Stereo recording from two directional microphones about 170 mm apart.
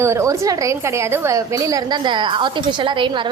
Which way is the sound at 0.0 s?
15° right (ahead or behind).